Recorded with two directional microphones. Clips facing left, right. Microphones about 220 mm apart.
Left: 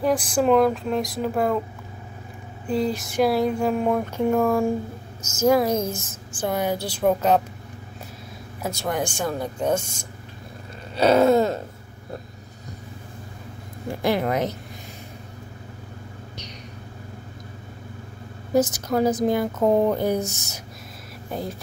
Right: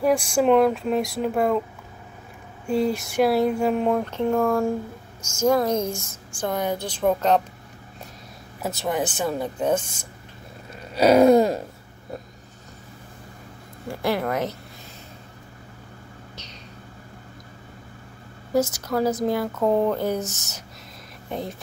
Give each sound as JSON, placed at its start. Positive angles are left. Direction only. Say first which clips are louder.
{"t": 0.0, "sound": "speech", "louder": "right 1 dB", "side_deg": 0}
{"t": 2.7, "sound": "speech", "louder": "right 1 dB", "side_deg": 0}
{"t": 8.6, "sound": "speech", "louder": "right 1 dB", "side_deg": 0}
{"t": 11.0, "sound": "a sound", "louder": "right 2 dB", "side_deg": -10}
{"t": 13.8, "sound": "speech", "louder": "left 2 dB", "side_deg": 20}
{"t": 18.5, "sound": "speech", "louder": "left 2 dB", "side_deg": 20}
{"t": 21.3, "sound": "speech", "louder": "even", "side_deg": 0}